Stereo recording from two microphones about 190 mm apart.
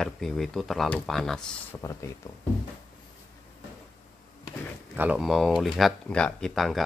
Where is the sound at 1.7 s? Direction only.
15° left (ahead or behind).